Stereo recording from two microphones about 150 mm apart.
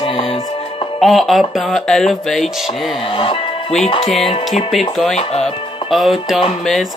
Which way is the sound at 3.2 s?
35° left (ahead or behind).